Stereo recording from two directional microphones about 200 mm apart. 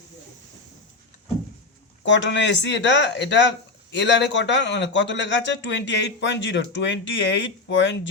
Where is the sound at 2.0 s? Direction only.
65° left (ahead or behind).